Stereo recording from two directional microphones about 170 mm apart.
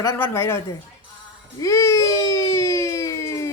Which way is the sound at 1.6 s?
15° left (ahead or behind).